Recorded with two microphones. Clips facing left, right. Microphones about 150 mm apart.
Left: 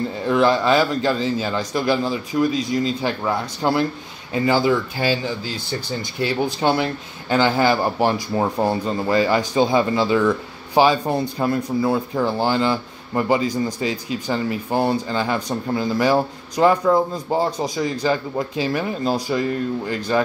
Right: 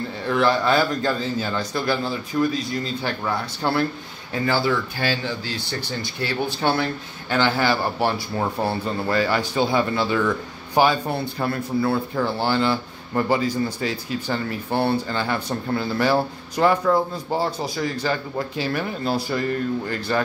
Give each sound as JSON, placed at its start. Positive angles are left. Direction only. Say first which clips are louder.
{"t": 0.3, "sound": "speech", "louder": "left 3 dB", "side_deg": 20}
{"t": 6.2, "sound": "speech", "louder": "left 3 dB", "side_deg": 15}